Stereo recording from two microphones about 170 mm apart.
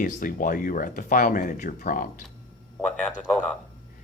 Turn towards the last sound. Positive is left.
turn(degrees=5)  # may be behind; listen again after turning